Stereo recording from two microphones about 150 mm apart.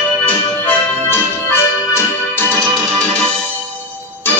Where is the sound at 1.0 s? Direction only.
15° left (ahead or behind).